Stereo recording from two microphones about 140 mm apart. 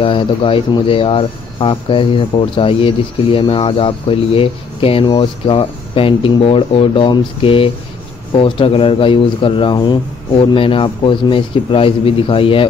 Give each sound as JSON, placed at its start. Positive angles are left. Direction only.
{"t": 0.0, "sound": "speech", "side_deg": 40}